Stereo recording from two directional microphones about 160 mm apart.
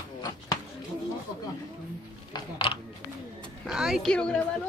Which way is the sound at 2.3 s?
35° left (ahead or behind).